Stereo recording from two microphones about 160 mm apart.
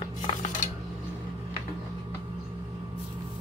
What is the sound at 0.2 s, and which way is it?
Dishes, 50° left (ahead or behind).